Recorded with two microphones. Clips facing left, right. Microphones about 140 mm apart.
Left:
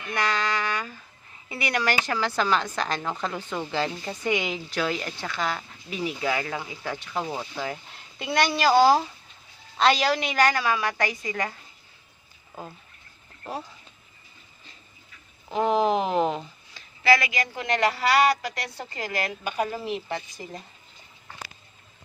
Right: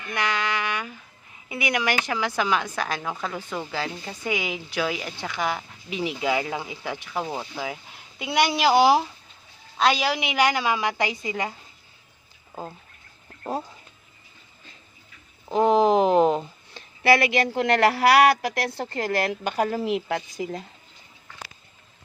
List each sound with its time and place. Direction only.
0.2 s a sound: 10° right (ahead or behind)
1.5 s a woman's voice: 10° right (ahead or behind)
9.7 s a woman's voice: 5° right (ahead or behind)
13.4 s speech: 20° right (ahead or behind)
15.4 s speech: 35° right (ahead or behind)
16.7 s a sound: 60° right (ahead or behind)
17.6 s a woman's voice: 75° right (ahead or behind)
19.5 s speech: 50° right (ahead or behind)
19.8 s speech: 90° right